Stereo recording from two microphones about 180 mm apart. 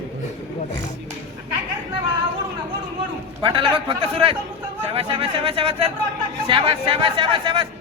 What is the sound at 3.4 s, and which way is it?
Speech, 30° right (ahead or behind).